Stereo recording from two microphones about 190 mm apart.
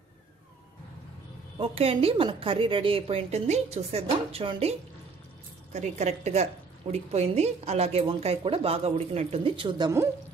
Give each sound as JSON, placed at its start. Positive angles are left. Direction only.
{"t": 1.6, "sound": "a woman's voice", "side_deg": -30}